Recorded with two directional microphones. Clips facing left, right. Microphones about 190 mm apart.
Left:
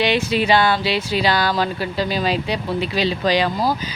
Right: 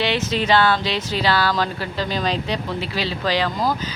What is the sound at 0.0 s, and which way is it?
Speech, 15° left (ahead or behind).